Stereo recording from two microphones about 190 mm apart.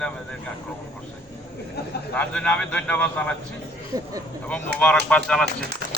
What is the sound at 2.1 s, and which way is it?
A man's voice, 5° left (ahead or behind).